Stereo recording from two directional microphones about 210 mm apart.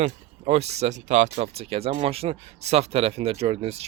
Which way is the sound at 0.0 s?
30° right (ahead or behind).